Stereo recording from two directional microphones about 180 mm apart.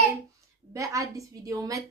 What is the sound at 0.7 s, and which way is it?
A woman's voice, 15° right (ahead or behind).